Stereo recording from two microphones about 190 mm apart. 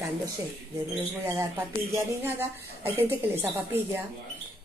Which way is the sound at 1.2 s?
15° right (ahead or behind).